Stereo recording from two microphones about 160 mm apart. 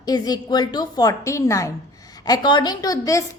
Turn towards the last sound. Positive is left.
turn(degrees=20)  # may be behind; listen again after turning